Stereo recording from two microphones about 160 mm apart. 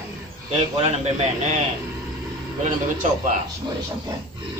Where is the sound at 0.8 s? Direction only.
40° right (ahead or behind).